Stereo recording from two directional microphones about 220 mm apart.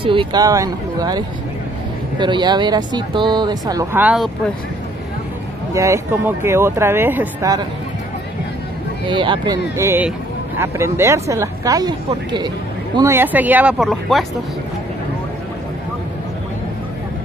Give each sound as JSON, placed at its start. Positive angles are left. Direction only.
{"t": 0.0, "sound": "speech", "side_deg": -25}
{"t": 5.7, "sound": "speech", "side_deg": -15}
{"t": 9.0, "sound": "speech", "side_deg": -20}